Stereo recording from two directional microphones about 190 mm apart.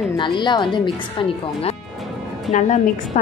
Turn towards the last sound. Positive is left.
turn(degrees=40)  # may be behind; listen again after turning